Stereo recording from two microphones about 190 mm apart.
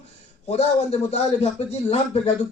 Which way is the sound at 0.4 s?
35° left (ahead or behind).